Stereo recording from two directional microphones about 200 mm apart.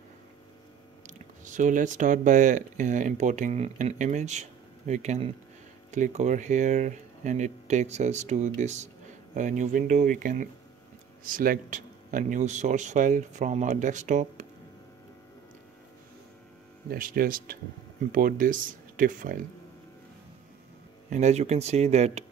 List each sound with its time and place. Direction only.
1.0 s speech: 40° right (ahead or behind)
16.9 s speech: 45° right (ahead or behind)
21.1 s speech: 35° right (ahead or behind)